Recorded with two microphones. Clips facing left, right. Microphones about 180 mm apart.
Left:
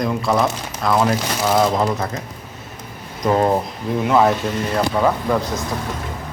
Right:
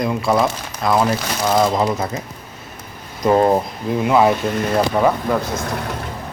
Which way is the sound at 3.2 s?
10° right (ahead or behind).